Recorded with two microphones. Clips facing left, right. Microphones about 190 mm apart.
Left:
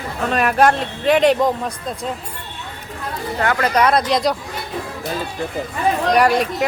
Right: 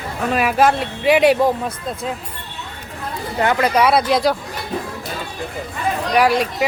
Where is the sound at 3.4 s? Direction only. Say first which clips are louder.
Right 1 dB; 20° right (ahead or behind).